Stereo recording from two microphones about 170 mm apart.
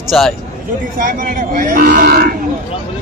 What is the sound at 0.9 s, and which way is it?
Speech, 50° right (ahead or behind).